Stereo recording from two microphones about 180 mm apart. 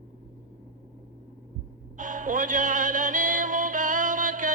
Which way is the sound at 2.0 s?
45° right (ahead or behind).